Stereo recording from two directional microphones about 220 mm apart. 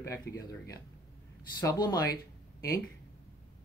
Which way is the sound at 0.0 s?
15° left (ahead or behind).